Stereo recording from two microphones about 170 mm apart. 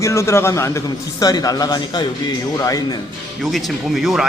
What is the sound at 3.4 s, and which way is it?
Speech, centre (ahead or behind).